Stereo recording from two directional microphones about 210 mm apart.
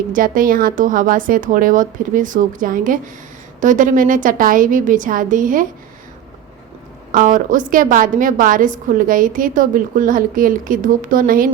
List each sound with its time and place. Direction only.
0.1 s a woman's voice: 40° right (ahead or behind)
7.1 s a woman's voice: 40° right (ahead or behind)